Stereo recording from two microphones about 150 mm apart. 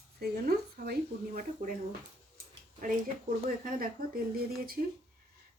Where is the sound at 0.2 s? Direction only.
90° right.